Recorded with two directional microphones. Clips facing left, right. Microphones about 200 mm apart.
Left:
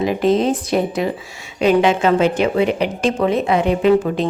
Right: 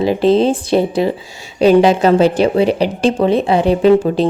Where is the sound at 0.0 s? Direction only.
30° right (ahead or behind).